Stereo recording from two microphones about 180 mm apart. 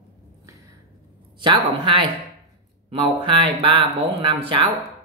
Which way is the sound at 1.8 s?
30° right (ahead or behind).